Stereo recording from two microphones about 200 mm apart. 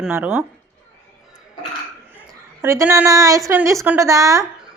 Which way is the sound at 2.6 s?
15° right (ahead or behind).